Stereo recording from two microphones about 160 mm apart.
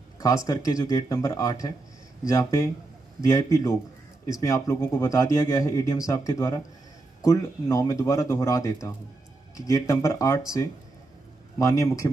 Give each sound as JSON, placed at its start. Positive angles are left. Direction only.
{"t": 0.5, "sound": "speech", "side_deg": 20}